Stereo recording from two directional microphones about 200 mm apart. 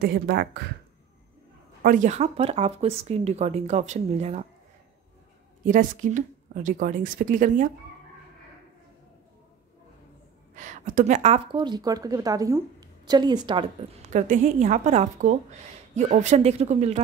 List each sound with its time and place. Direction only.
0.0 s speech: 55° right (ahead or behind)
1.8 s speech: 40° right (ahead or behind)
5.7 s speech: 40° right (ahead or behind)
10.5 s speech: 40° right (ahead or behind); by 13.7 s 20° right (ahead or behind)
14.1 s speech: 40° right (ahead or behind)